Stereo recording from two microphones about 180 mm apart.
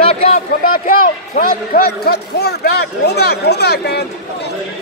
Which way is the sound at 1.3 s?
55° left (ahead or behind).